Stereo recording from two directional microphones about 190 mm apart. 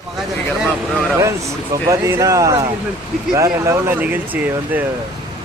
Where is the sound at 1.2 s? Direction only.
15° right (ahead or behind).